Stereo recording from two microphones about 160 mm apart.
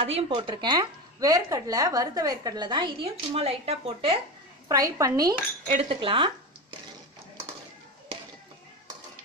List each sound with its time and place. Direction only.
0.0 s a woman's voice: 35° right (ahead or behind)
4.6 s a woman's voice: 20° right (ahead or behind)
5.7 s speech: 35° right (ahead or behind)